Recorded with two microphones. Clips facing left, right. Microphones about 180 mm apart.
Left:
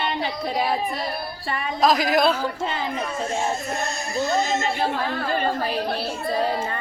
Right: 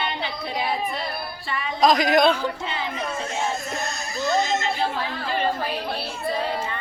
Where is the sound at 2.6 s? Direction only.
45° left (ahead or behind).